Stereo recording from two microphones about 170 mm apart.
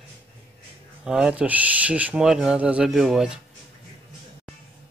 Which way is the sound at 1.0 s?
5° right (ahead or behind).